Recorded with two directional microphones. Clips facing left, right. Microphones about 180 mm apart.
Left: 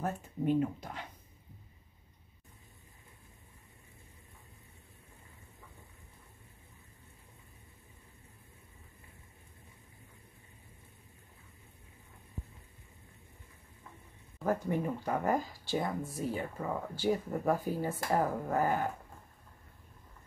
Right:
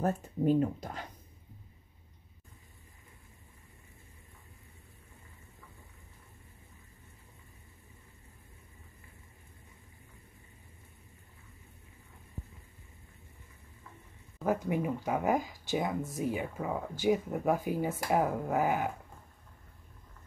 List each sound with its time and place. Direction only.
0.0 s speech: 40° right (ahead or behind)
14.4 s speech: 10° right (ahead or behind)